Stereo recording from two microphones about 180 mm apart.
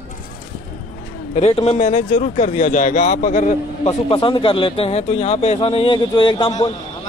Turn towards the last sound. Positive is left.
turn(degrees=25)  # may be behind; listen again after turning